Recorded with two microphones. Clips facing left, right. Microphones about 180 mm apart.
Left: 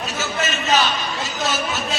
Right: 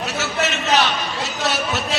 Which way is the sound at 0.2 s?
70° right (ahead or behind).